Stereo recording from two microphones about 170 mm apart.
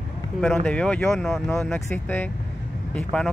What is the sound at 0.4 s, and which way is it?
Speech, 5° left (ahead or behind).